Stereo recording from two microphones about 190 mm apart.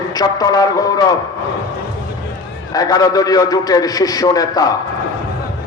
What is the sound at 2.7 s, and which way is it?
A man's voice, 20° left (ahead or behind).